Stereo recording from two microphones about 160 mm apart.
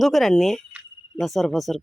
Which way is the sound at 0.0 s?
Centre (ahead or behind).